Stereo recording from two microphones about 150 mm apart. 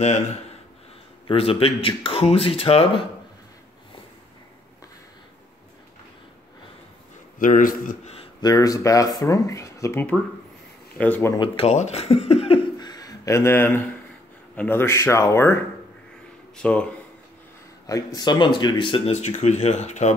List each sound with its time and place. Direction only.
0.0 s speech: 45° left (ahead or behind)
7.3 s a man's voice: 65° left (ahead or behind)
8.4 s speech: 25° left (ahead or behind)
11.3 s speech: 35° left (ahead or behind)
12.7 s a sound: 25° left (ahead or behind)
14.5 s speech: 10° left (ahead or behind)
17.8 s speech: 25° left (ahead or behind); by 20.2 s 50° left (ahead or behind)